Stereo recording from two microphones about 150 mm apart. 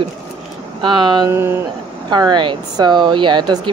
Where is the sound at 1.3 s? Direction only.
15° right (ahead or behind).